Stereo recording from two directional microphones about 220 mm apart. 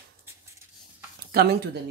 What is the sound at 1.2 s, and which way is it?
Speech, 45° right (ahead or behind).